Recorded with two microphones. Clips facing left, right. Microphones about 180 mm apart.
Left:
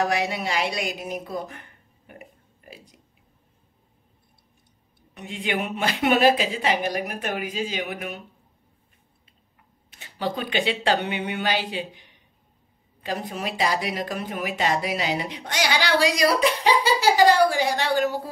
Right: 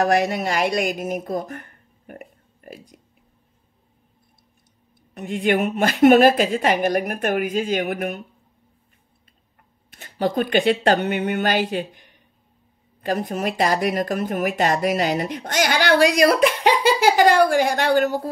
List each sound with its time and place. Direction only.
0.0 s speech: 50° right (ahead or behind)
5.1 s speech: 50° right (ahead or behind)
9.9 s speech: 50° right (ahead or behind)